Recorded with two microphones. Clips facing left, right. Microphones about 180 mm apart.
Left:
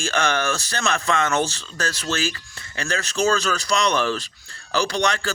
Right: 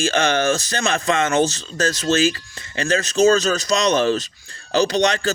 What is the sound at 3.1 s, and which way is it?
Speech, 20° right (ahead or behind).